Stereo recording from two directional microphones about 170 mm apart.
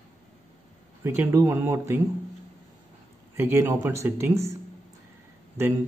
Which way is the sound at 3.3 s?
10° right (ahead or behind).